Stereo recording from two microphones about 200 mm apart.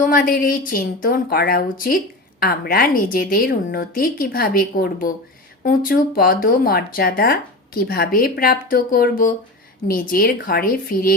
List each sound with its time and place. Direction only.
0.0 s speech: 45° left (ahead or behind)